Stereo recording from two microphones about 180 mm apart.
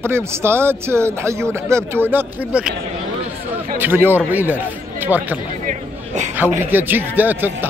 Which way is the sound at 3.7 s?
10° right (ahead or behind).